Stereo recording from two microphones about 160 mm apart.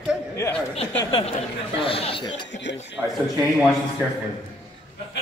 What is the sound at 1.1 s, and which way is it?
Speech, 35° left (ahead or behind).